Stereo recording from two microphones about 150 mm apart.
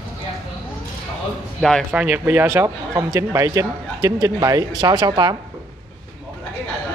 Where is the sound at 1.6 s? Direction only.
Centre (ahead or behind).